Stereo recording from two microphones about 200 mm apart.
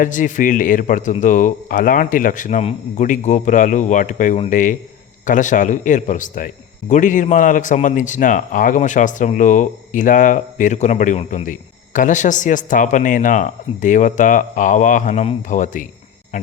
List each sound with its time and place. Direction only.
0.0 s speech: 40° left (ahead or behind)